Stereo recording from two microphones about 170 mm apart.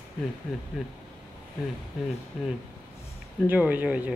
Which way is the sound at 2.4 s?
Centre (ahead or behind).